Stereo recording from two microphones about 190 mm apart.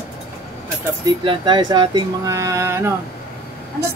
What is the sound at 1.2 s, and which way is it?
Speech, 25° right (ahead or behind).